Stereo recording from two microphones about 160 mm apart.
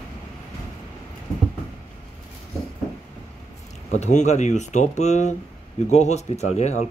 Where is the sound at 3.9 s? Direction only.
50° left (ahead or behind).